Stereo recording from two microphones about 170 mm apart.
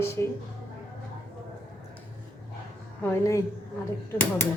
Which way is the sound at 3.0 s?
15° left (ahead or behind).